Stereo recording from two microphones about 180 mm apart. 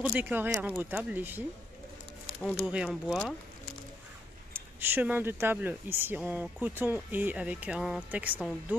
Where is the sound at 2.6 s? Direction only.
5° right (ahead or behind).